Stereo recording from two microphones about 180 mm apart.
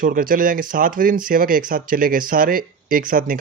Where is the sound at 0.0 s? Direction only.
50° right (ahead or behind).